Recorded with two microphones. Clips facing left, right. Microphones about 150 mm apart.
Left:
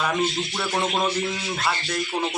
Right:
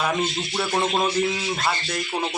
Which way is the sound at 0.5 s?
10° right (ahead or behind).